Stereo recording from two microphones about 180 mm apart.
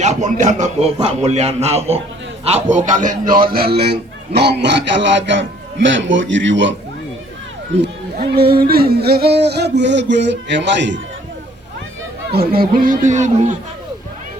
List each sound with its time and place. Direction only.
0.0 s speech: 40° right (ahead or behind)
3.5 s a man's voice: 60° right (ahead or behind); by 6.7 s 90° right
7.8 s speech: 60° right (ahead or behind); by 11.0 s 85° right
12.3 s speech: 60° right (ahead or behind); by 13.6 s 40° right (ahead or behind)